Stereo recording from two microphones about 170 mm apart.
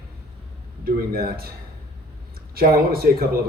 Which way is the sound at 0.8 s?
60° right (ahead or behind).